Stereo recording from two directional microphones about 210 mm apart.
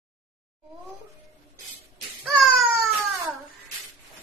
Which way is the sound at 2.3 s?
Centre (ahead or behind).